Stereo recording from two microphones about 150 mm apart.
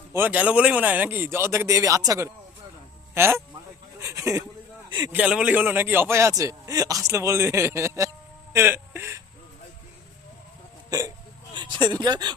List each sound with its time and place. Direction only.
0.1 s a man's voice: 10° right (ahead or behind)
5.1 s a man's voice: 5° right (ahead or behind)
10.8 s speech: 25° right (ahead or behind)